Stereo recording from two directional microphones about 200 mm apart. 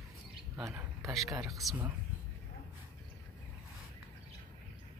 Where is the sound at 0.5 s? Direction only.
15° right (ahead or behind).